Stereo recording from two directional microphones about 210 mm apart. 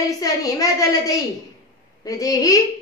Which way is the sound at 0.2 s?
15° left (ahead or behind).